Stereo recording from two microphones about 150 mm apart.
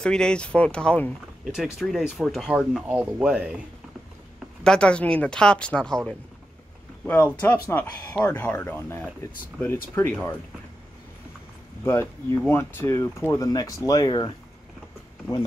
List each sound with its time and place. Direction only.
0.0 s speech: 5° left (ahead or behind)
4.6 s speech: 5° left (ahead or behind)
11.8 s speech: 15° left (ahead or behind)